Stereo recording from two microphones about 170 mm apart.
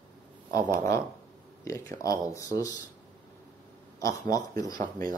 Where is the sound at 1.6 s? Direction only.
20° left (ahead or behind).